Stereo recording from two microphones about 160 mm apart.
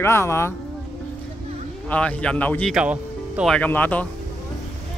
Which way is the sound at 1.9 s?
10° left (ahead or behind).